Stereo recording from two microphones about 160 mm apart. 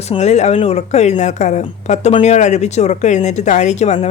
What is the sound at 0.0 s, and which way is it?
Speech, 45° left (ahead or behind).